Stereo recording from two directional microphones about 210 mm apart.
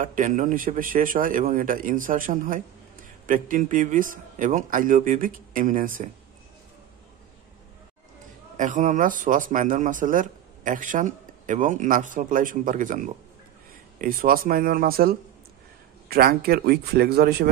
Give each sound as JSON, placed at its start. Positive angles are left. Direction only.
{"t": 0.0, "sound": "speech", "side_deg": -40}
{"t": 8.5, "sound": "speech", "side_deg": -35}